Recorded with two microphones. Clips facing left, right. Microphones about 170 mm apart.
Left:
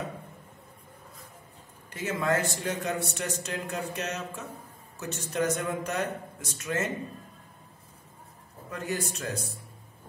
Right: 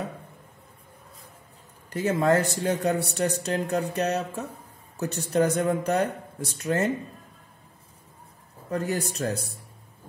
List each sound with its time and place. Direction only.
1.9 s speech: 35° right (ahead or behind)
8.6 s a man's voice: 35° right (ahead or behind)